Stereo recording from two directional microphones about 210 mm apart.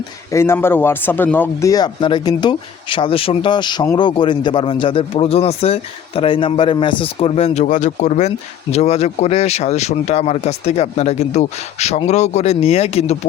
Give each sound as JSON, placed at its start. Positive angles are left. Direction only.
{"t": 0.3, "sound": "speech", "side_deg": 10}